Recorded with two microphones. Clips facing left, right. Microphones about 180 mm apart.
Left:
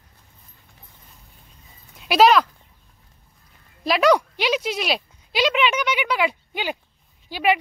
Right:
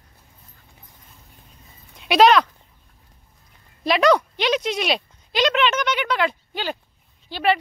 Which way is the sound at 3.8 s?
5° left (ahead or behind).